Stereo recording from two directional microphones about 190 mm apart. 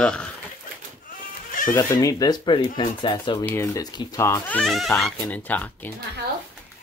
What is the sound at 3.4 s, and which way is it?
Speech, 15° left (ahead or behind).